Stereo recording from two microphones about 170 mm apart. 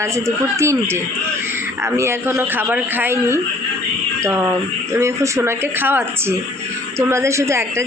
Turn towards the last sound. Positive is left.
turn(degrees=-15)  # may be behind; listen again after turning